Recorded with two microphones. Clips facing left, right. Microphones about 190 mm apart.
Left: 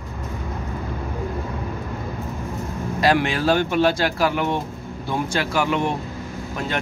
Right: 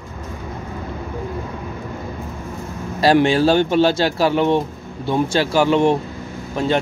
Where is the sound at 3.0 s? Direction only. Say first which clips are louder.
Right 6 dB; 30° right (ahead or behind).